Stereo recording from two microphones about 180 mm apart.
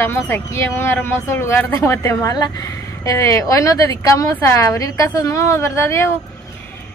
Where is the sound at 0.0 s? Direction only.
15° left (ahead or behind).